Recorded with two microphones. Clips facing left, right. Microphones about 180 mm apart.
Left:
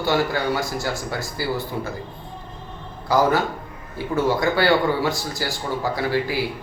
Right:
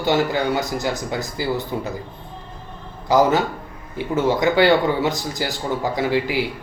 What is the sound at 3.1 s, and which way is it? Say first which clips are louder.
Speech: right 2 dB; 20° right (ahead or behind).